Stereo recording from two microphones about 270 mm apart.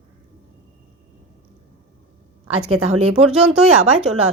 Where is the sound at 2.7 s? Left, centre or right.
Right.